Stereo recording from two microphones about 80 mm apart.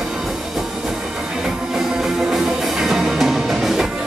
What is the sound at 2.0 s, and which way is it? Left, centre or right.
Music, centre.